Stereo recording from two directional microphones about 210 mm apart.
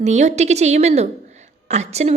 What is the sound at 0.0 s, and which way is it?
A woman's voice, 30° right (ahead or behind).